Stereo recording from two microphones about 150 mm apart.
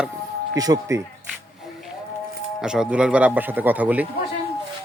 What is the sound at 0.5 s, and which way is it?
Speech, 25° right (ahead or behind).